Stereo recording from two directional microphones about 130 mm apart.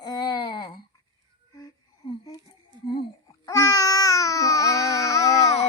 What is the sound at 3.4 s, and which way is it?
Babbling, 25° left (ahead or behind).